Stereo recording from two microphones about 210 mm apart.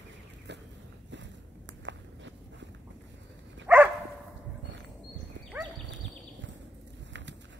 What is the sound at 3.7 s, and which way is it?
Dog, 5° right (ahead or behind).